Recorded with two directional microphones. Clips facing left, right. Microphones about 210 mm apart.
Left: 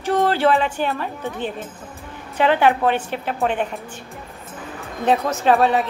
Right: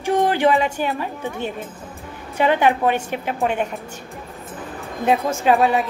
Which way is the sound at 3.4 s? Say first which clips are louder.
Even; 5° right (ahead or behind).